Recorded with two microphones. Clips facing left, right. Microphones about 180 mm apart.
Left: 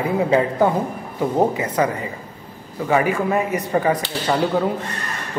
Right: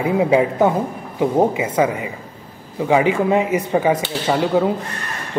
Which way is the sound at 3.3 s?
20° right (ahead or behind).